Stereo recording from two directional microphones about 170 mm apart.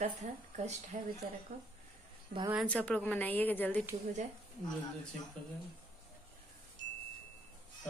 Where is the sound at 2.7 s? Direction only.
10° left (ahead or behind).